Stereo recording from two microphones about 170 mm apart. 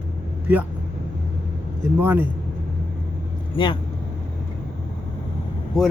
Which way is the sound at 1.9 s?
10° right (ahead or behind).